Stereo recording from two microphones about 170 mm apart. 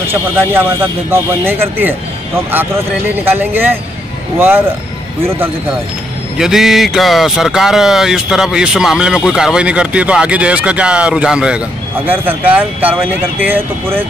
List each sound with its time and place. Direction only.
0.1 s speech: 15° right (ahead or behind)
6.3 s speech: 5° right (ahead or behind)